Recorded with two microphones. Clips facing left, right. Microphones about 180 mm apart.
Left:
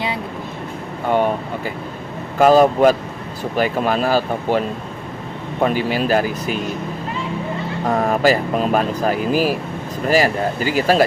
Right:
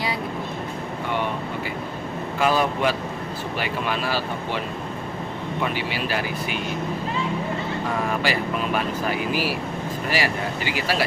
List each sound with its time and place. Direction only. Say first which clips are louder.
1.0 s air conditioning: left 9 dB; 45° left (ahead or behind)
2.4 s speech: left 10 dB; 45° left (ahead or behind)
7.9 s speech: left 10 dB; 45° left (ahead or behind)